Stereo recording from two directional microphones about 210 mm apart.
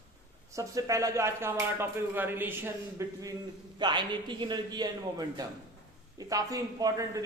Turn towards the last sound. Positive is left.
turn(degrees=-15)  # may be behind; listen again after turning